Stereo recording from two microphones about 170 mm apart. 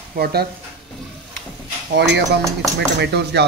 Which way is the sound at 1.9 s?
85° right.